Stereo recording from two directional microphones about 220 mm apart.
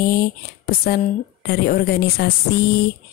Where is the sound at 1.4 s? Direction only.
45° left (ahead or behind).